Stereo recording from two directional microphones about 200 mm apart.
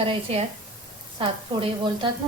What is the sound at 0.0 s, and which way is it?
Speech, 30° right (ahead or behind).